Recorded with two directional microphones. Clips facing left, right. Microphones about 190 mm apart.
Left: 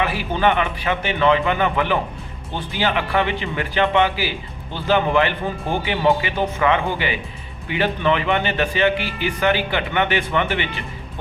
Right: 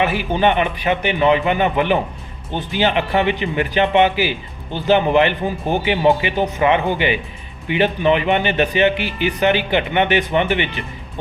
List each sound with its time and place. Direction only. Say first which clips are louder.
0.0 s a man's voice: right 3 dB; 20° right (ahead or behind)